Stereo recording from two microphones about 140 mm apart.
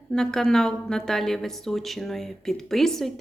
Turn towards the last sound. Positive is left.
turn(degrees=0)  # may be behind; listen again after turning